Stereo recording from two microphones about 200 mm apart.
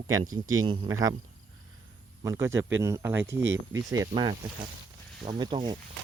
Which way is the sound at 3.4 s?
70° right (ahead or behind).